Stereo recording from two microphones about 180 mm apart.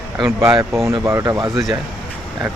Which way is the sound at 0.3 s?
15° right (ahead or behind).